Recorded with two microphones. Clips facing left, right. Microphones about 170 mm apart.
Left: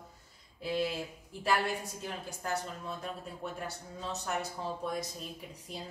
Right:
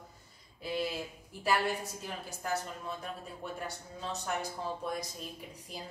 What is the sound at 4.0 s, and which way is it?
A woman's voice, centre (ahead or behind).